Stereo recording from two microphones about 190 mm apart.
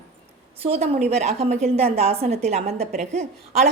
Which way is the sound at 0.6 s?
30° right (ahead or behind).